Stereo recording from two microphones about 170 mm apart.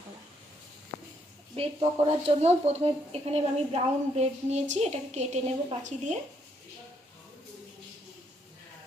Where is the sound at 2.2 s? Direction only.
40° right (ahead or behind).